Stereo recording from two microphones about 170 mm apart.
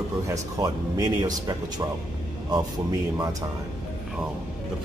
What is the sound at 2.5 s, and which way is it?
Speech, 20° right (ahead or behind).